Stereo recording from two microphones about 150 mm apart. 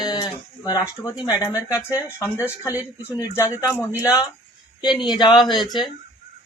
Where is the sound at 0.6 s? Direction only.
25° left (ahead or behind).